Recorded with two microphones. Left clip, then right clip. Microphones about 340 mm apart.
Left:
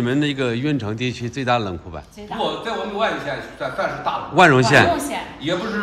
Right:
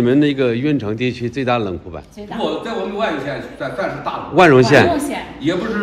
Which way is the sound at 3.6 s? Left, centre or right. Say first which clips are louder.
Right 1 dB; centre.